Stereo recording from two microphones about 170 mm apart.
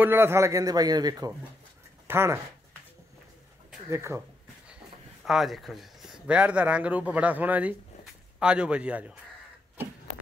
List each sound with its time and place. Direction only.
0.0 s a man's voice: 15° right (ahead or behind)
3.9 s speech: 15° right (ahead or behind)
5.2 s speech: centre (ahead or behind)